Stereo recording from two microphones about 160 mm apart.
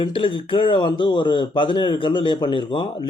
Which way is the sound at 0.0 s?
35° left (ahead or behind).